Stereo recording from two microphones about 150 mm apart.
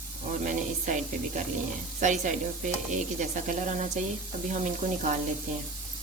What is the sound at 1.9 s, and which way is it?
Sizzle, 55° right (ahead or behind).